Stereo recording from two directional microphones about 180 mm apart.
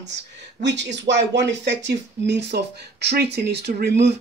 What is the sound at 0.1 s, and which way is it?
Speech, 75° right (ahead or behind).